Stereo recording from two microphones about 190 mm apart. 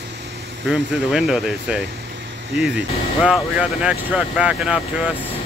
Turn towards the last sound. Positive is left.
turn(degrees=-5)  # may be behind; listen again after turning